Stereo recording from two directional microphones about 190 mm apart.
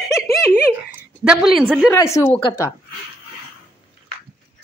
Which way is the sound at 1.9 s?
15° left (ahead or behind).